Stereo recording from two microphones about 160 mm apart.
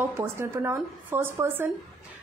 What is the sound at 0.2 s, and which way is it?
A woman's voice, 15° right (ahead or behind).